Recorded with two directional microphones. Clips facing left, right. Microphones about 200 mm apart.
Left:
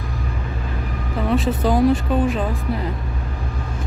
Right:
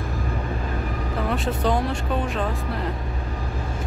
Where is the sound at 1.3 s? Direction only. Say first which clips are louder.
Left 5 dB; centre (ahead or behind).